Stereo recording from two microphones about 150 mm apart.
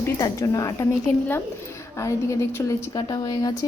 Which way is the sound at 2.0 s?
20° left (ahead or behind).